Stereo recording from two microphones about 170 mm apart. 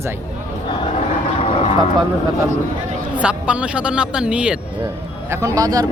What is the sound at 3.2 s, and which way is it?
Speech, 5° right (ahead or behind).